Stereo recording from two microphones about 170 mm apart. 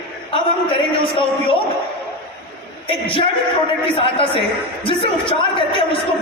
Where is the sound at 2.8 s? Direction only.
30° left (ahead or behind).